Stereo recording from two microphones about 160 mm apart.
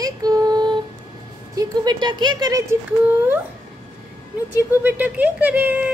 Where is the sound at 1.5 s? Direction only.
25° right (ahead or behind).